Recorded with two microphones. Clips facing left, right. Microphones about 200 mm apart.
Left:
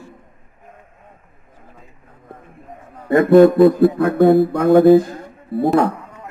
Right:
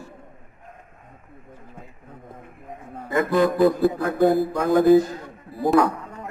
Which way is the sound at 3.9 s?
60° left (ahead or behind).